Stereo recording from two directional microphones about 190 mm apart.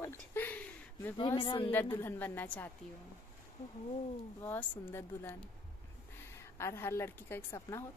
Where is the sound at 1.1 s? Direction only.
25° left (ahead or behind).